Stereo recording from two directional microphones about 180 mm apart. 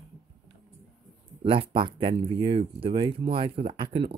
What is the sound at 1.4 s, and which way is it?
Speech, 30° right (ahead or behind).